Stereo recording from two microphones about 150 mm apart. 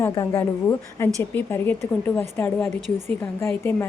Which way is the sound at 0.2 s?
20° left (ahead or behind).